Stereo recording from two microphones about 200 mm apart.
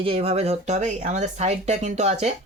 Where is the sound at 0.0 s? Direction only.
30° right (ahead or behind).